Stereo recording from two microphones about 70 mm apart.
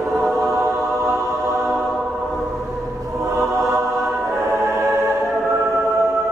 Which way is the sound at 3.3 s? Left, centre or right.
Right.